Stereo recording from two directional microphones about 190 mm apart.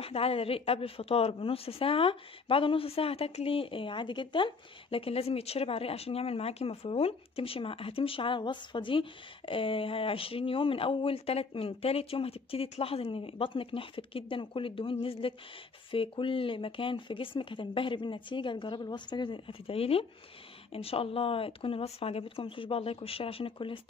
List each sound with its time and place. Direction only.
0.0 s a woman's voice: 30° left (ahead or behind)